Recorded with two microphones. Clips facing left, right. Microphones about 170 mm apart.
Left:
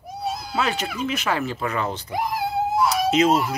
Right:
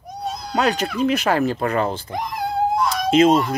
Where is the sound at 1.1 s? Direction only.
40° right (ahead or behind).